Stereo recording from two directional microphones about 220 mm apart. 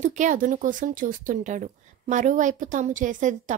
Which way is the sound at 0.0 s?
35° right (ahead or behind).